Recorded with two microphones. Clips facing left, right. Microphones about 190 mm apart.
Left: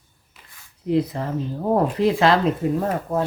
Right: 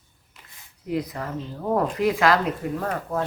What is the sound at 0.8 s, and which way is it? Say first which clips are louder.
Speech: left 6 dB; 25° left (ahead or behind).